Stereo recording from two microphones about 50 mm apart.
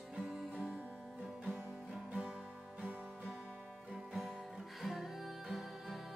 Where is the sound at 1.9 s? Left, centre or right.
Centre.